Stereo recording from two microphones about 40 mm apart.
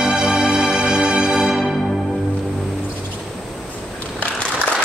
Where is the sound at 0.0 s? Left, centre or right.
Right.